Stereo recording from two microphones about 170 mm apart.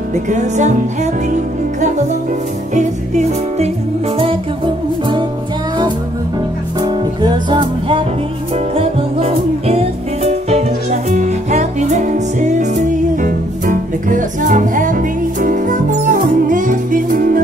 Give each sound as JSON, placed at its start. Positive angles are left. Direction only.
{"t": 0.1, "sound": "music", "side_deg": -45}
{"t": 6.8, "sound": "music", "side_deg": -25}